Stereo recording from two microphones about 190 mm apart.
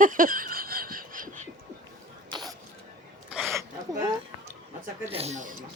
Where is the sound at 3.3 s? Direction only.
Centre (ahead or behind).